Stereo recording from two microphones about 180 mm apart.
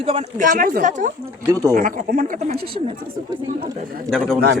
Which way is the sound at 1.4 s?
20° right (ahead or behind).